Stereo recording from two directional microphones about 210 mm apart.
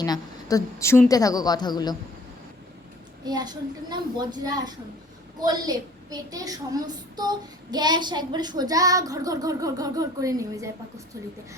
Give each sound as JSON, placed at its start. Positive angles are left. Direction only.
{"t": 0.0, "sound": "a woman's voice", "side_deg": 20}
{"t": 3.2, "sound": "a child's voice", "side_deg": -20}
{"t": 5.5, "sound": "child singing", "side_deg": -20}